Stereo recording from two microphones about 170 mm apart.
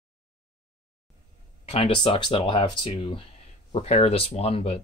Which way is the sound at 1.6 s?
30° left (ahead or behind).